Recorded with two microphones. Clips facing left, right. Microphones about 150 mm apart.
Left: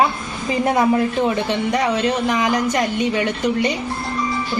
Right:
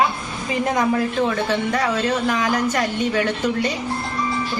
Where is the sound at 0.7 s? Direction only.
25° left (ahead or behind).